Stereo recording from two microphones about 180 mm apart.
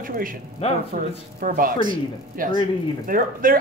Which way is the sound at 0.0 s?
50° right (ahead or behind).